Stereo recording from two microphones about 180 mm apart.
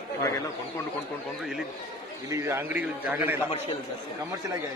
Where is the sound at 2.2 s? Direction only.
15° right (ahead or behind).